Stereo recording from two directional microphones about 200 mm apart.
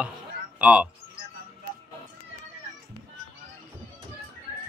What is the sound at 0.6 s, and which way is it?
Speech, 5° right (ahead or behind).